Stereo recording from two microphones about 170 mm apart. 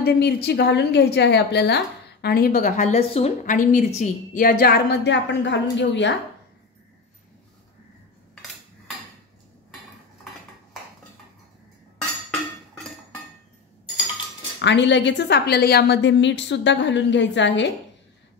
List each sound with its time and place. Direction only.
0.0 s a woman's voice: 75° left (ahead or behind)
2.2 s a woman's voice: 65° left (ahead or behind); by 3.5 s 35° left (ahead or behind)
3.5 s a woman's voice: 50° left (ahead or behind); by 6.1 s 90° left
12.3 s music: centre (ahead or behind)
14.6 s a woman's voice: 90° left